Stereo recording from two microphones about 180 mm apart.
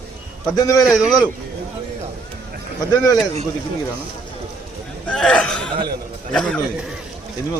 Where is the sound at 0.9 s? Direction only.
Centre (ahead or behind).